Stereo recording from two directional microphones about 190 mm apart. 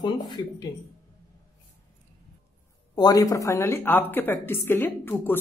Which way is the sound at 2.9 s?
20° left (ahead or behind).